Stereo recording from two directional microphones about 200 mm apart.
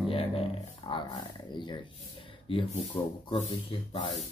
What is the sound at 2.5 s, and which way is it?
Speech, 25° left (ahead or behind).